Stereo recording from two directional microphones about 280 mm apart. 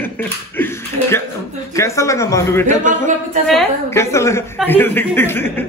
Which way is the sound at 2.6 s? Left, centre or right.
Right.